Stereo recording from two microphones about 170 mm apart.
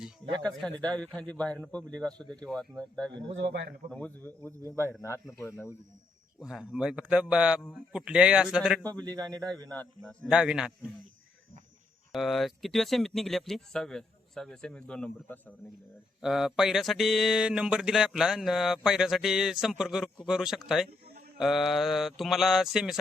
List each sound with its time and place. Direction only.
0.6 s a man's voice: 5° left (ahead or behind)
3.3 s a man's voice: 90° right
3.9 s a man's voice: 10° left (ahead or behind)
6.4 s speech: 5° right (ahead or behind)
9.0 s speech: 25° right (ahead or behind)
9.6 s a man's voice: 10° left (ahead or behind)
10.2 s speech: 5° right (ahead or behind)
12.1 s speech: centre (ahead or behind)
16.2 s speech: centre (ahead or behind)